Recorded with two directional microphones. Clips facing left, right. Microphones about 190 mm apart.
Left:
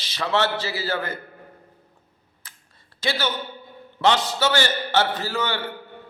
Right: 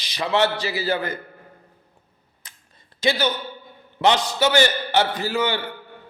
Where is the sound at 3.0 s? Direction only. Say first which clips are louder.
Right 4 dB; 15° right (ahead or behind).